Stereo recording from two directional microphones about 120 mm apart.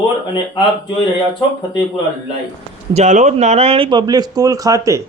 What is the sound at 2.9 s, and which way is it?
A man's voice, 80° right.